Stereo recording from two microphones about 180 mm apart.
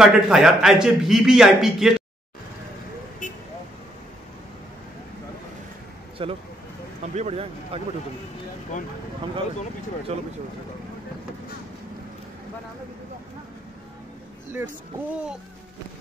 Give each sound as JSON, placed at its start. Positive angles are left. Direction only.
{"t": 0.0, "sound": "a man's voice", "side_deg": -5}
{"t": 6.2, "sound": "speech", "side_deg": -30}
{"t": 10.1, "sound": "speech", "side_deg": -35}